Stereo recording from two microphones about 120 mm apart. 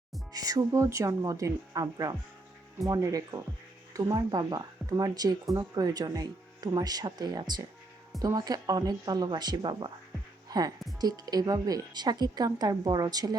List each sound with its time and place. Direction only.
0.3 s speech: 30° right (ahead or behind)